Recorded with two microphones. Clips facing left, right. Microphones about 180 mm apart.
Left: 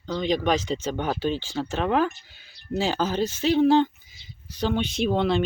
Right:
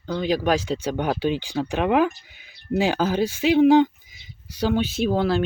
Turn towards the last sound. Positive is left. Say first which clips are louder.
# right 1 dB
turn(degrees=-5)  # may be behind; listen again after turning